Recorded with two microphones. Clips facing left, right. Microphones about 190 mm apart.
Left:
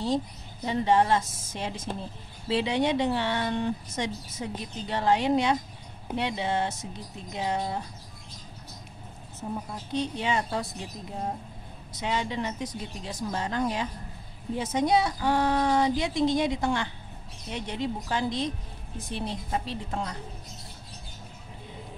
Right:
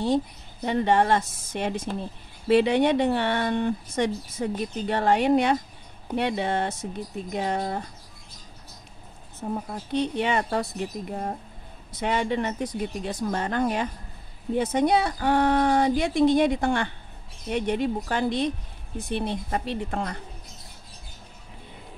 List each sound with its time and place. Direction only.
0.7 s speech: 60° right (ahead or behind)
9.9 s speech: 60° right (ahead or behind)